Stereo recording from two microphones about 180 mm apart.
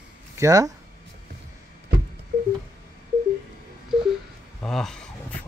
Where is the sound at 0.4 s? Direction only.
20° right (ahead or behind).